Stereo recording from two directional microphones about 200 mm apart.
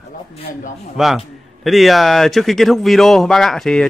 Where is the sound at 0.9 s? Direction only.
Centre (ahead or behind).